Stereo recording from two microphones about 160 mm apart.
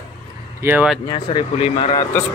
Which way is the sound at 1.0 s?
30° left (ahead or behind).